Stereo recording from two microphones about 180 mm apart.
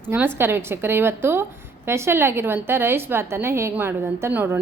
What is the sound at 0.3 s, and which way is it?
A woman's voice, 10° right (ahead or behind).